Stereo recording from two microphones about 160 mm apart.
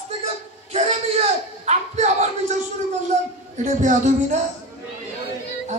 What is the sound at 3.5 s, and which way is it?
Speech, 50° right (ahead or behind).